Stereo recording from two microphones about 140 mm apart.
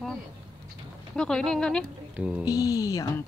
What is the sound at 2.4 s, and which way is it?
Speech, 25° left (ahead or behind).